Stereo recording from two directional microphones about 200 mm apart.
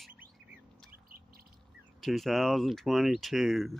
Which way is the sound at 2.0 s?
Centre (ahead or behind).